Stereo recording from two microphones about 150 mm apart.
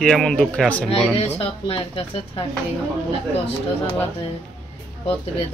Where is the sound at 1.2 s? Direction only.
40° left (ahead or behind).